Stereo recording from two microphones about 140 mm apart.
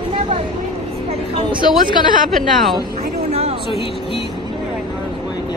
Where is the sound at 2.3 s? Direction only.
Centre (ahead or behind).